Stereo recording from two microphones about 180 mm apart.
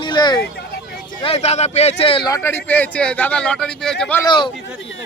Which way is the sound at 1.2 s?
35° left (ahead or behind).